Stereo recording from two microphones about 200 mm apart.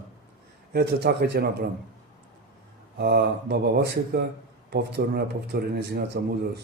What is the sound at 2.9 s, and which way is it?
A man's voice, 55° right (ahead or behind).